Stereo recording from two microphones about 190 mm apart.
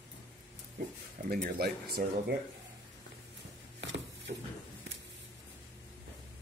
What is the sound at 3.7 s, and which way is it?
Mechanisms, 75° right (ahead or behind).